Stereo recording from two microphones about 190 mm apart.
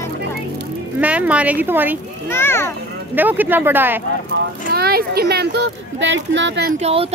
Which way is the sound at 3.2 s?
10° right (ahead or behind).